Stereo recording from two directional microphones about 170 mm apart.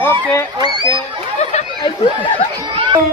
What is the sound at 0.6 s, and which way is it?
Speech, 25° right (ahead or behind).